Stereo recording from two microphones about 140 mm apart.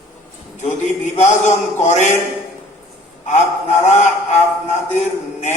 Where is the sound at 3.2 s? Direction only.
55° left (ahead or behind).